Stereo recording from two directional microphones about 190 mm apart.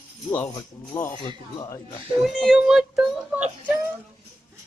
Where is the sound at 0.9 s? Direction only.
10° left (ahead or behind).